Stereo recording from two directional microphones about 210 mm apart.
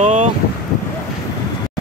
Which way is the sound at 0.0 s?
30° right (ahead or behind).